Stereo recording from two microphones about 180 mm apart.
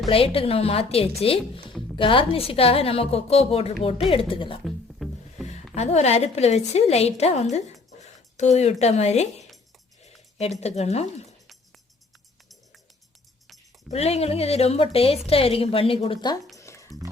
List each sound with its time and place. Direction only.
0.1 s a woman's voice: 30° left (ahead or behind)
4.6 s music: centre (ahead or behind)
5.7 s a woman's voice: 35° left (ahead or behind)
13.9 s a woman's voice: 35° left (ahead or behind)
16.6 s music: 15° left (ahead or behind)